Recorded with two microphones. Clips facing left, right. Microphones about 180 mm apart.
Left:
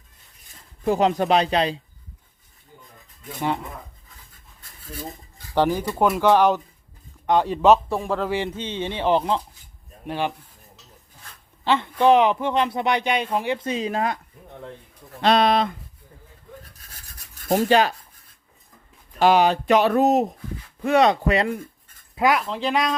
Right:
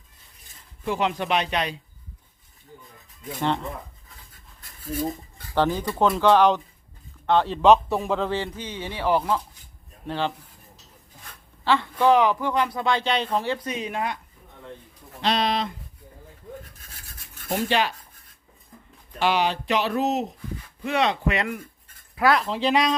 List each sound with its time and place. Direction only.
0.9 s speech: 40° left (ahead or behind)
3.4 s speech: 10° left (ahead or behind)
5.5 s speech: 10° left (ahead or behind)
7.9 s speech: centre (ahead or behind)
8.3 s speech: 20° left (ahead or behind)
11.6 s speech: 20° left (ahead or behind)
13.7 s speech: 30° left (ahead or behind)
15.2 s speech: 55° left (ahead or behind)
17.5 s speech: 40° left (ahead or behind)
19.2 s speech: 45° left (ahead or behind)
22.1 s speech: 20° left (ahead or behind)
22.4 s speech: centre (ahead or behind)